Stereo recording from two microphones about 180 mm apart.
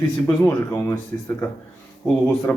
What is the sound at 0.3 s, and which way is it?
Speech, 15° left (ahead or behind).